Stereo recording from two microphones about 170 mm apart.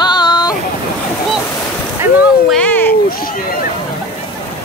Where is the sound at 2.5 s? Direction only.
10° left (ahead or behind).